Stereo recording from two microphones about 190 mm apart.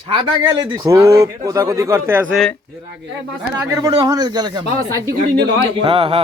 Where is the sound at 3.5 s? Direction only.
20° right (ahead or behind).